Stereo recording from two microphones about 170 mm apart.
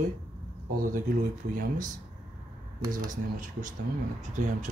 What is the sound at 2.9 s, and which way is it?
Speech, 50° right (ahead or behind).